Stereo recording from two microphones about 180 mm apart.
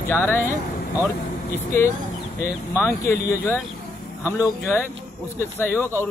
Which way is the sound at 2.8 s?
15° left (ahead or behind).